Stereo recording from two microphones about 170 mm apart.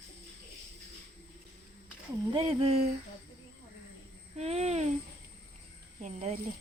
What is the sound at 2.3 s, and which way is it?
Speech, 35° right (ahead or behind).